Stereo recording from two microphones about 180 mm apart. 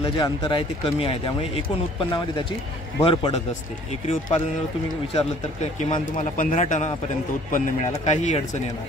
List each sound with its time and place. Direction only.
0.0 s speech: 25° left (ahead or behind)
5.1 s speech: 40° left (ahead or behind)